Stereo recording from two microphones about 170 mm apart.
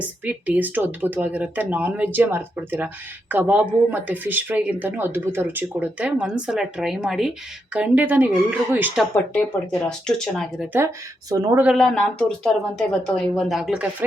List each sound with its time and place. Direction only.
0.0 s speech: 10° right (ahead or behind)
10.1 s speech: centre (ahead or behind)
10.7 s speech: 15° right (ahead or behind)
11.6 s speech: centre (ahead or behind)